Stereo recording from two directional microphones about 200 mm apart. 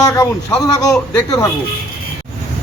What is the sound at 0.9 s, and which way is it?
Speech, 5° left (ahead or behind).